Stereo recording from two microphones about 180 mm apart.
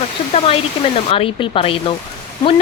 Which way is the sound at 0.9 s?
30° left (ahead or behind).